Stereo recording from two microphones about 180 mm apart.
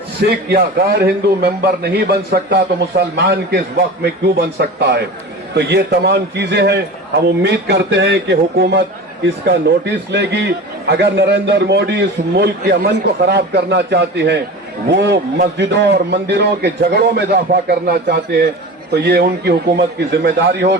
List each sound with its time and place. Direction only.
0.3 s a man's voice: 60° right (ahead or behind)